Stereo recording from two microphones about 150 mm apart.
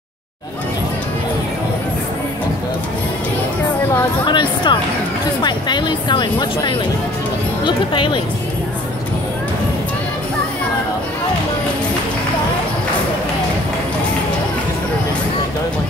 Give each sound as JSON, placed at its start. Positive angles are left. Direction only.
{"t": 4.3, "sound": "speech", "side_deg": 30}